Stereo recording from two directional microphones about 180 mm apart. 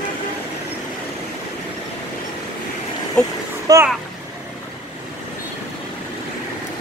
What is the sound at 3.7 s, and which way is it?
Speech, 20° right (ahead or behind).